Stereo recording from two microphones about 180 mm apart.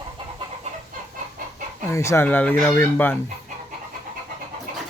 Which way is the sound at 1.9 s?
15° left (ahead or behind).